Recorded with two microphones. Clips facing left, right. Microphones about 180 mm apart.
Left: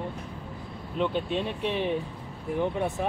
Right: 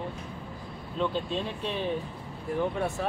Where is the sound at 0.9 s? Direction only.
15° left (ahead or behind).